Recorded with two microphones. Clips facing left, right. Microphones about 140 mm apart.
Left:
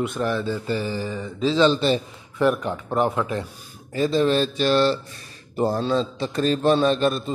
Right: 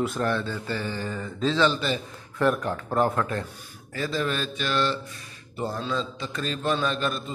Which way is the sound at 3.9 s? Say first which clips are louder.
Left 8 dB; 25° left (ahead or behind).